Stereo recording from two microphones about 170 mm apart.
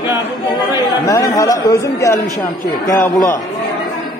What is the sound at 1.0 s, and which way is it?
Speech, 20° left (ahead or behind).